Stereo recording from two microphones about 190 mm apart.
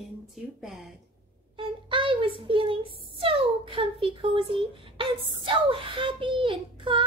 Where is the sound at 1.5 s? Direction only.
25° right (ahead or behind).